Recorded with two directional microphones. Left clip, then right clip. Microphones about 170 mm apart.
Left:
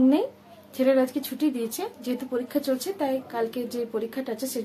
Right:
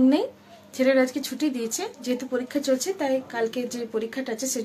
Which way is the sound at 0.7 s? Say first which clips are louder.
Right 1 dB; centre (ahead or behind).